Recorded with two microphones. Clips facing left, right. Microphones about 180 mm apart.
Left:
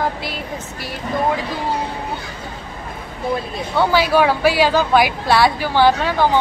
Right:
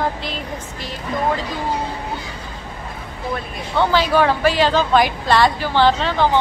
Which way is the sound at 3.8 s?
10° left (ahead or behind).